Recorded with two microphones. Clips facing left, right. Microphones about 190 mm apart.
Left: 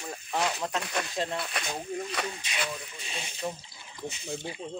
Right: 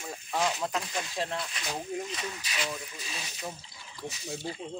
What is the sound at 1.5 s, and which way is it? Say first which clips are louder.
Speech: left 4 dB; 65° left (ahead or behind).